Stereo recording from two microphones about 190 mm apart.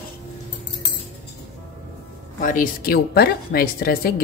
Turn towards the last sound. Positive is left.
turn(degrees=55)  # may be behind; listen again after turning